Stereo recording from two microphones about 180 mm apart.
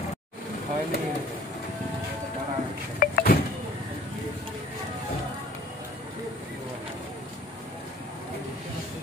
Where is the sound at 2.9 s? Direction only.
50° left (ahead or behind).